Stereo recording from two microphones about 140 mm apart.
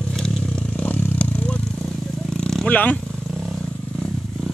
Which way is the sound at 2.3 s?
5° left (ahead or behind).